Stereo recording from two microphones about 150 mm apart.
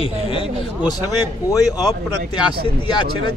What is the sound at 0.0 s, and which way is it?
A man's voice, 35° left (ahead or behind).